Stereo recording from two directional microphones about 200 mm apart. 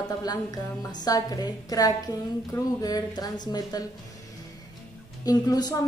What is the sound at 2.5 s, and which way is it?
Music, 20° left (ahead or behind).